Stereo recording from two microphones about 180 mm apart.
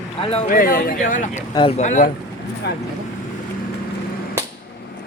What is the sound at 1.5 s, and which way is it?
Speech, 30° left (ahead or behind).